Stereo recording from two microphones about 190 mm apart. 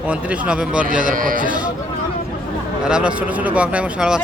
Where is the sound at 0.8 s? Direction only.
45° right (ahead or behind).